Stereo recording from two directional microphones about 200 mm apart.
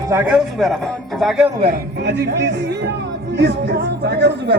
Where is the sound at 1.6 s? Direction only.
55° right (ahead or behind).